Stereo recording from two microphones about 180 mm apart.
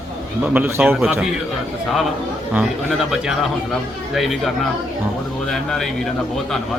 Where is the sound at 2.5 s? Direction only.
5° right (ahead or behind).